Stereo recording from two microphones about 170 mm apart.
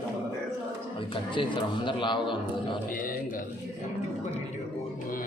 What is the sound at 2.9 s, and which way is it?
Speech, 55° left (ahead or behind).